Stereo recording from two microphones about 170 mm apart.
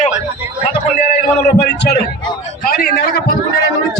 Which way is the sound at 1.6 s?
70° left (ahead or behind).